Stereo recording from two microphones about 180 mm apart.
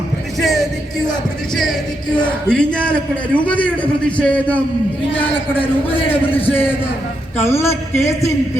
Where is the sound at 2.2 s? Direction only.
5° left (ahead or behind).